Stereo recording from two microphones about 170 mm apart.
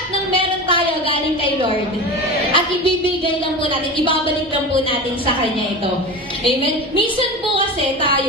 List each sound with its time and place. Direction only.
2.5 s a woman's voice: 30° left (ahead or behind)